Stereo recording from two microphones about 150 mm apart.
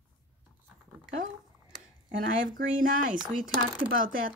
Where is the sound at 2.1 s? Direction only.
65° right (ahead or behind).